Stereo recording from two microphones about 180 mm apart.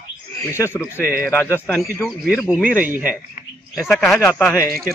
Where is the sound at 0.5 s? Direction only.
15° left (ahead or behind).